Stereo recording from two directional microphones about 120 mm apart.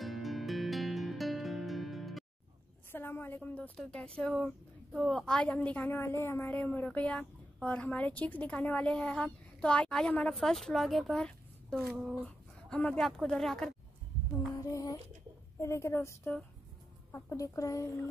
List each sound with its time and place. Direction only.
0.0 s music: centre (ahead or behind)
2.9 s a woman's voice: 15° left (ahead or behind)
14.6 s speech: 30° left (ahead or behind)